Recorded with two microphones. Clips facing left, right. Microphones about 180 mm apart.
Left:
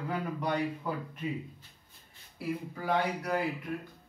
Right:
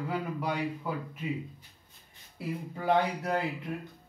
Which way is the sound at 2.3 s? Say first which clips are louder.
Left 1 dB; 25° right (ahead or behind).